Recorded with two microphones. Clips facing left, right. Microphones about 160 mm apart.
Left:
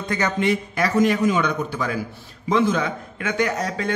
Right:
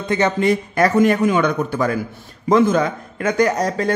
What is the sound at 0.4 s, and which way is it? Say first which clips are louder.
A man's voice: right 5 dB; 45° right (ahead or behind).